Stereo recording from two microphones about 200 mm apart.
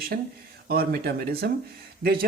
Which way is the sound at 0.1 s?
50° right (ahead or behind).